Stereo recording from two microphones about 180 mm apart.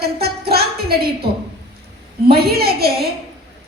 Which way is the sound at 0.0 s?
60° right (ahead or behind).